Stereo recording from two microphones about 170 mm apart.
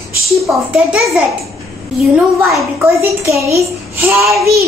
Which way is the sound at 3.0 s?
15° right (ahead or behind).